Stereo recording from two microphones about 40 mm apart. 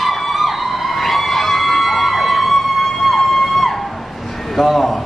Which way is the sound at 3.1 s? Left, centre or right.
Centre.